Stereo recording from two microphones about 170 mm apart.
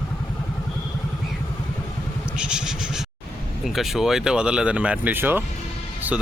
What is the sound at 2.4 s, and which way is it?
Vehicle, 5° right (ahead or behind).